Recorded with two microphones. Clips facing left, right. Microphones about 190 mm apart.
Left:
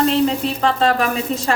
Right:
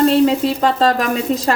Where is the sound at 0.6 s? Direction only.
40° right (ahead or behind).